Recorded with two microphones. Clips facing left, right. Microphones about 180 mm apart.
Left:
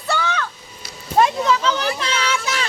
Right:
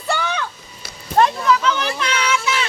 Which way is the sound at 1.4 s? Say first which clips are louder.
Right 1 dB; 30° left (ahead or behind).